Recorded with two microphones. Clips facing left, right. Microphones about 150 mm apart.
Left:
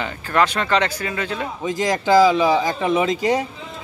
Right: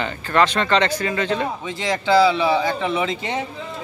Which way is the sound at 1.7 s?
45° left (ahead or behind).